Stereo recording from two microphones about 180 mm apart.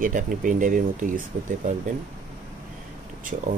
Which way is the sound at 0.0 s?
45° right (ahead or behind).